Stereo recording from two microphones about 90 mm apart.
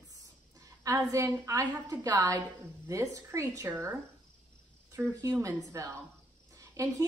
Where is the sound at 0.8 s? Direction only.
35° right (ahead or behind).